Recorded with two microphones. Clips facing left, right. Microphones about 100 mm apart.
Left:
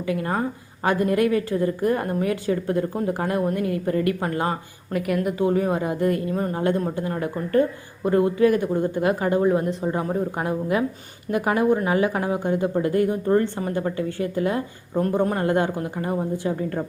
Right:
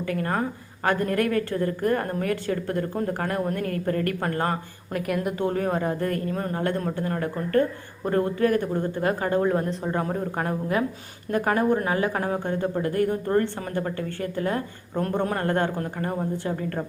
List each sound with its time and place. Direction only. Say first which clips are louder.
0.1 s speech: left 3 dB; 15° left (ahead or behind)
4.9 s speech: left 3 dB; centre (ahead or behind); by 14.6 s 20° left (ahead or behind)
14.9 s speech: left 4 dB; 5° left (ahead or behind)